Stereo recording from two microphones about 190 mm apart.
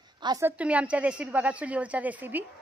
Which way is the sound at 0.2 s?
20° right (ahead or behind).